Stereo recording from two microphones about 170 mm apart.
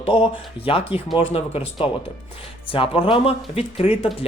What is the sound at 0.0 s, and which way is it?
Speech, 30° left (ahead or behind).